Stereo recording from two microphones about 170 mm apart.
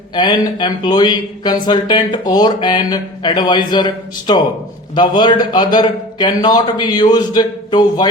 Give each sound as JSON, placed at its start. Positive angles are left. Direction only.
{"t": 0.1, "sound": "a man's voice", "side_deg": 25}